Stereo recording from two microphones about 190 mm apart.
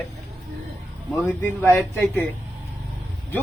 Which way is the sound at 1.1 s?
10° left (ahead or behind).